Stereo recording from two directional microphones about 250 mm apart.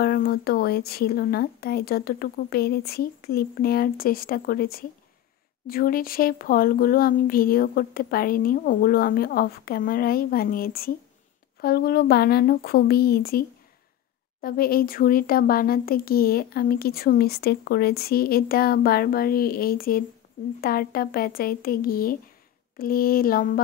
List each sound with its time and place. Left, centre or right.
0.0 s speech: left